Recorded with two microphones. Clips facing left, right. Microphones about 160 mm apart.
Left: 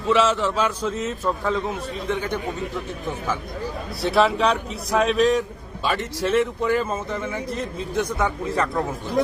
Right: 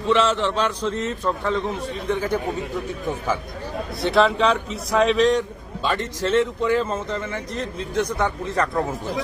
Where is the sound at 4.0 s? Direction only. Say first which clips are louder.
Right 1 dB; centre (ahead or behind).